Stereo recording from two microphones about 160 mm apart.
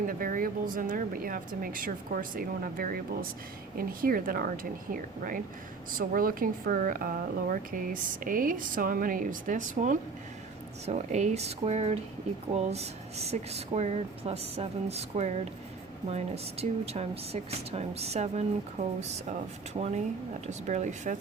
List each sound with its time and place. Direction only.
0.1 s speech: 60° right (ahead or behind)
6.0 s speech: 60° right (ahead or behind)
10.8 s speech: 45° right (ahead or behind)
20.5 s speech: 45° right (ahead or behind)